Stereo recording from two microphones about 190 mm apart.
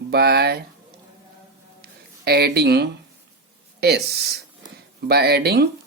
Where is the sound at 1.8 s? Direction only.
55° right (ahead or behind).